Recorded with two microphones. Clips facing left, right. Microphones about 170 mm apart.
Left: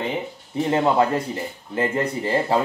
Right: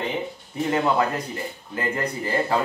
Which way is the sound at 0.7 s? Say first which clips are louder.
Left 3 dB; 25° left (ahead or behind).